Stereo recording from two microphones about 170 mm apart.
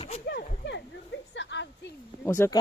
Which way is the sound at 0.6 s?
90° left.